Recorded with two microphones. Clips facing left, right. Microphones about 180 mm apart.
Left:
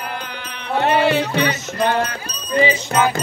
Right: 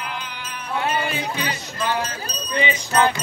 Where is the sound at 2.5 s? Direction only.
35° left (ahead or behind).